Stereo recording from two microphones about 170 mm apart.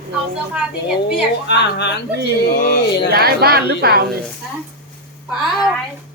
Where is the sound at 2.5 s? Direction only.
60° left (ahead or behind).